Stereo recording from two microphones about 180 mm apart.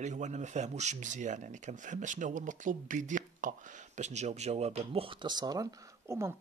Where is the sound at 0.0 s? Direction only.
40° right (ahead or behind).